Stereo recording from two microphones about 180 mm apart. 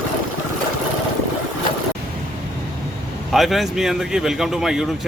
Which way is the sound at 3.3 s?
Centre (ahead or behind).